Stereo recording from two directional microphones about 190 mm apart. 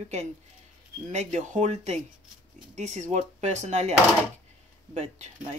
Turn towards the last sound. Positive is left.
turn(degrees=-40)  # may be behind; listen again after turning